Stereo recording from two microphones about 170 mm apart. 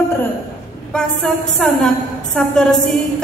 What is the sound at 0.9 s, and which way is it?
A woman's voice, 5° left (ahead or behind).